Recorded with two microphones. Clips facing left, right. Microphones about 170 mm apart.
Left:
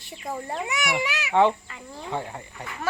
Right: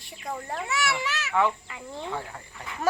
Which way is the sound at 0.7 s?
15° left (ahead or behind).